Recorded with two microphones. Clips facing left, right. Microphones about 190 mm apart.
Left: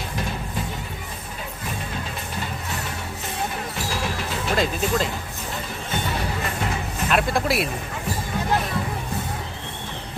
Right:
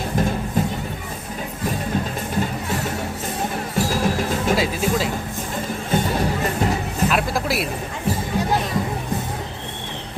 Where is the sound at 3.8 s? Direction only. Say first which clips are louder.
Right 9 dB; 45° right (ahead or behind).